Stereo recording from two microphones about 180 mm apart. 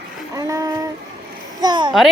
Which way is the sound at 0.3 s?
20° right (ahead or behind).